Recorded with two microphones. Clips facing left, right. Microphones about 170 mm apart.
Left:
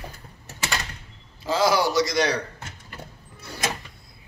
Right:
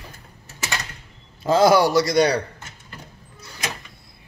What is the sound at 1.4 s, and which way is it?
Speech, 55° right (ahead or behind).